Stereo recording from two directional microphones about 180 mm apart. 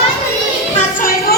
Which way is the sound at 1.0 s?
55° left (ahead or behind).